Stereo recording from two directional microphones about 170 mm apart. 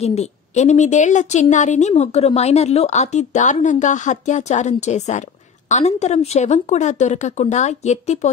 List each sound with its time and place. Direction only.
0.0 s a woman's voice: 40° left (ahead or behind)